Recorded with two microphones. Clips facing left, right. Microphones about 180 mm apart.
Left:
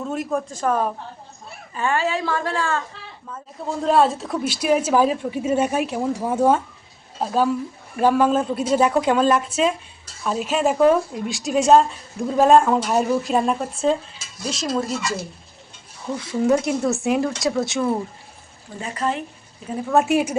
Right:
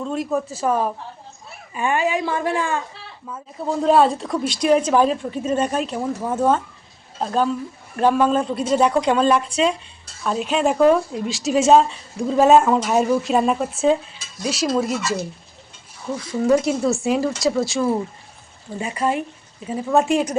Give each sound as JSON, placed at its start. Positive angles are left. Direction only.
{"t": 0.0, "sound": "speech", "side_deg": 5}
{"t": 1.7, "sound": "speech", "side_deg": -15}
{"t": 3.8, "sound": "a woman's voice", "side_deg": 0}
{"t": 16.3, "sound": "speech", "side_deg": 0}
{"t": 18.8, "sound": "speech", "side_deg": -10}